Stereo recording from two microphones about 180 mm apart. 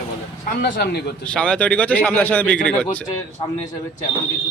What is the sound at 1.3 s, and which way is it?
Speech, 5° left (ahead or behind).